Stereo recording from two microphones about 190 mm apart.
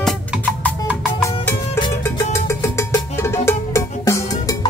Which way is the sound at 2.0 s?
15° left (ahead or behind).